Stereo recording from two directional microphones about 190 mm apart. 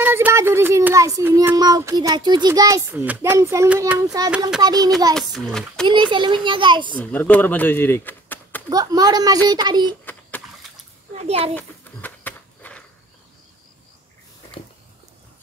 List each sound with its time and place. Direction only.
0.0 s a child's voice: 10° right (ahead or behind)
4.6 s a child's voice: 20° right (ahead or behind)
5.3 s a child's voice: centre (ahead or behind)
5.9 s a child's voice: 25° right (ahead or behind)
7.0 s speech: 10° left (ahead or behind)
8.6 s a child's voice: 20° right (ahead or behind)
11.2 s a child's voice: 35° right (ahead or behind)
11.5 s a sound: 10° left (ahead or behind)